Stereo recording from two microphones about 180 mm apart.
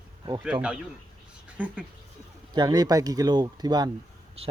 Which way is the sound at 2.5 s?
20° right (ahead or behind).